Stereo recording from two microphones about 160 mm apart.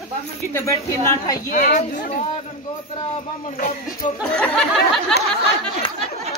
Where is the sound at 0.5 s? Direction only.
20° left (ahead or behind).